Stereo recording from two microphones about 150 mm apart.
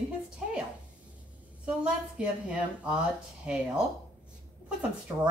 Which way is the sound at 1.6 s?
10° right (ahead or behind).